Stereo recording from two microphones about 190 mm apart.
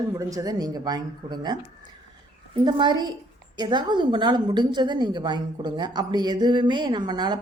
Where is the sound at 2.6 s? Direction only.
25° right (ahead or behind).